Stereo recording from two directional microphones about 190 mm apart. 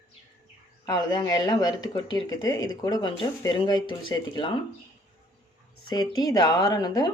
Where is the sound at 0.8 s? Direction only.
20° left (ahead or behind).